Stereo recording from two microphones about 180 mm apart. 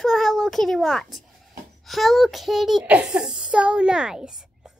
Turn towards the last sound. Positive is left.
turn(degrees=-5)  # may be behind; listen again after turning